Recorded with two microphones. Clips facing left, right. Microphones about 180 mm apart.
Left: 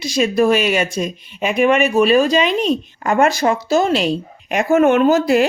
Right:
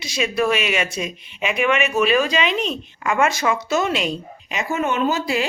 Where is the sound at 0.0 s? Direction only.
35° left (ahead or behind).